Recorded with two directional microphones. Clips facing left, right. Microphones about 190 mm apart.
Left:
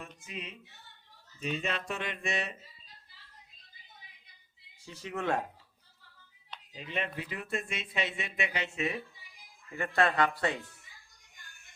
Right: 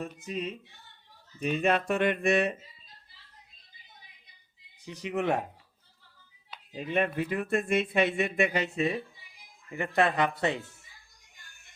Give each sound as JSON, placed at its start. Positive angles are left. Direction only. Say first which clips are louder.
{"t": 0.3, "sound": "music", "louder": "right 9 dB", "side_deg": -40}
{"t": 1.4, "sound": "speech", "louder": "right 8 dB", "side_deg": -55}
{"t": 4.8, "sound": "speech", "louder": "right 6 dB", "side_deg": -20}
{"t": 6.7, "sound": "speech", "louder": "right 8 dB", "side_deg": -50}
{"t": 9.7, "sound": "speech", "louder": "right 2 dB", "side_deg": -20}